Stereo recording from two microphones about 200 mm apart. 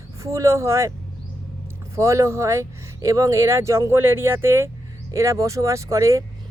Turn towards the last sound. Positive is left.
turn(degrees=-15)  # may be behind; listen again after turning